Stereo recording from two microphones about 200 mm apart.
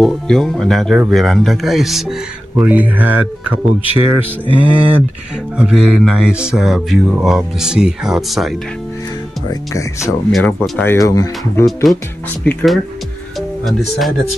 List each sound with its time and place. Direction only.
0.0 s speech: centre (ahead or behind)
4.5 s music: 25° right (ahead or behind)
5.6 s speech: 5° right (ahead or behind)
9.5 s speech: 15° left (ahead or behind)
11.6 s speech: centre (ahead or behind)